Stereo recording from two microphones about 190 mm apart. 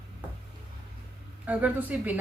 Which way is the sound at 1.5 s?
5° right (ahead or behind).